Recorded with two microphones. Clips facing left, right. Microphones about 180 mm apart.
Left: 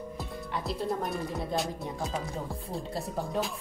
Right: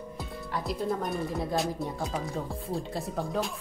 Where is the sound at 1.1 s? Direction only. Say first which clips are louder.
Right 2 dB; centre (ahead or behind).